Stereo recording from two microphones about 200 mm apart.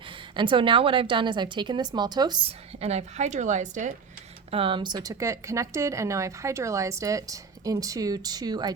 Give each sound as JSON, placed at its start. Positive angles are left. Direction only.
{"t": 0.0, "sound": "a woman's voice", "side_deg": -25}
{"t": 4.5, "sound": "speech", "side_deg": -25}